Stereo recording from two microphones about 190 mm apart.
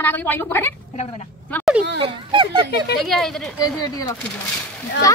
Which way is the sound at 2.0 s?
25° right (ahead or behind).